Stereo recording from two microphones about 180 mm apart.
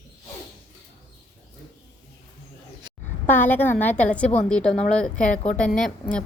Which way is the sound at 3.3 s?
10° left (ahead or behind).